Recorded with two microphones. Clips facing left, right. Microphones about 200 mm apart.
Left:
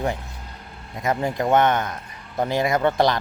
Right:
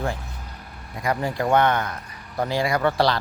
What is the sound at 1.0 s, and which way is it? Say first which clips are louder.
Speech: left 1 dB; 20° left (ahead or behind).